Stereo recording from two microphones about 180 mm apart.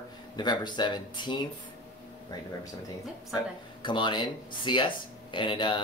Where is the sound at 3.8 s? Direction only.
25° left (ahead or behind).